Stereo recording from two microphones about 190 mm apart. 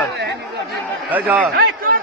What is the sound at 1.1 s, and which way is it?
Speech, 10° right (ahead or behind).